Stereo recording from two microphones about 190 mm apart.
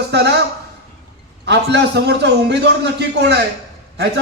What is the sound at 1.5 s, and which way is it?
A man's voice, 60° right (ahead or behind).